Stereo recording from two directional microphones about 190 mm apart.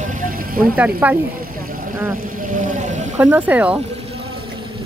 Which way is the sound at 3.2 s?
10° right (ahead or behind).